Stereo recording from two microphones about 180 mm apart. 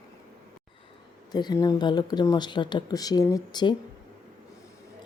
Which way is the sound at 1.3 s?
25° left (ahead or behind).